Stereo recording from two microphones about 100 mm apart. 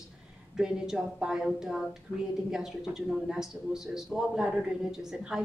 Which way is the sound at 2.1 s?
55° left (ahead or behind).